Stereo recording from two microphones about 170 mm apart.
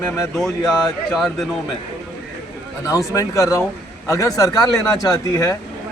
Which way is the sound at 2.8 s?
20° left (ahead or behind).